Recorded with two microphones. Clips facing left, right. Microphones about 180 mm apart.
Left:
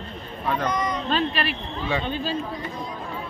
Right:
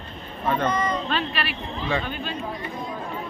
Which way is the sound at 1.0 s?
40° left (ahead or behind).